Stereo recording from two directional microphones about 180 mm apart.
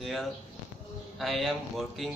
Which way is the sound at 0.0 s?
Centre (ahead or behind).